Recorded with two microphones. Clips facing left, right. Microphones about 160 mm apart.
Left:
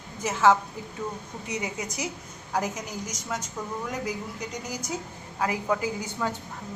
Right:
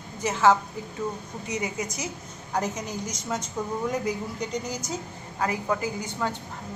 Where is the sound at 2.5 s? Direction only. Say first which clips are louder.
Right 1 dB; 10° left (ahead or behind).